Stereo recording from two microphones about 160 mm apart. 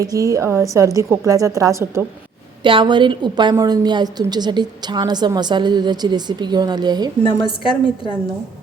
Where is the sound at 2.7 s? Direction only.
30° right (ahead or behind).